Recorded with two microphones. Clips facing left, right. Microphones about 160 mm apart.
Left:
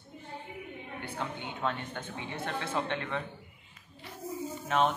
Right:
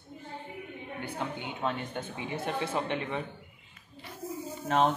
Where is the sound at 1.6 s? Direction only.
15° right (ahead or behind).